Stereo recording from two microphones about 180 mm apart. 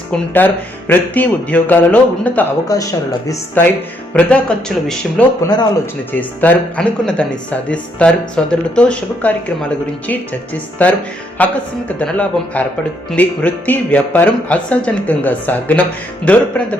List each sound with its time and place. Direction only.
0.1 s speech: 10° left (ahead or behind)
2.6 s speech: 20° left (ahead or behind)